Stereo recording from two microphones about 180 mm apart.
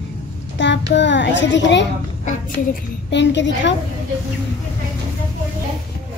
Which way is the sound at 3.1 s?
80° left.